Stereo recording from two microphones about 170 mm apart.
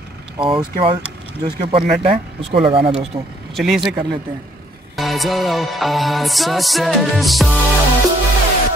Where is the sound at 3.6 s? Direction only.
Centre (ahead or behind).